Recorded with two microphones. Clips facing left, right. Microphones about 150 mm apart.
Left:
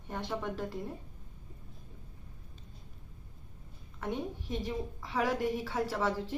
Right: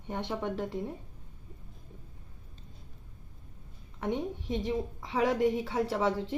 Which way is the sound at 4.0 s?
20° right (ahead or behind).